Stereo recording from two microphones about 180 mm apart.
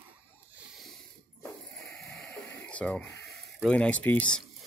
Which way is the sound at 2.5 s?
5° left (ahead or behind).